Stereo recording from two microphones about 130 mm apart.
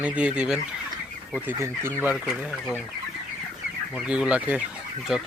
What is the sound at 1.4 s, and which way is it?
Fowl, 20° right (ahead or behind).